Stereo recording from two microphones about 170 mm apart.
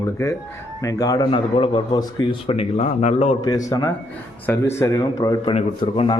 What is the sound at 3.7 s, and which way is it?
A man's voice, 20° left (ahead or behind).